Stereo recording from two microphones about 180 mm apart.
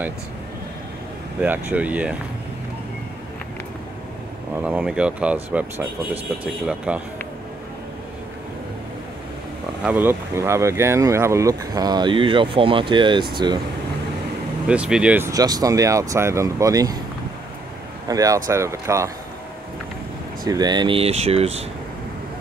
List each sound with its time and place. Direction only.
1.4 s speech: 10° right (ahead or behind)
4.6 s speech: 5° right (ahead or behind)
9.8 s speech: 10° right (ahead or behind)
14.7 s speech: 5° right (ahead or behind)
18.0 s speech: 20° right (ahead or behind)
20.4 s speech: 25° right (ahead or behind)